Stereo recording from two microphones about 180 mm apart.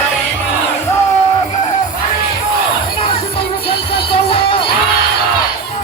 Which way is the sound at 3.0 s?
30° left (ahead or behind).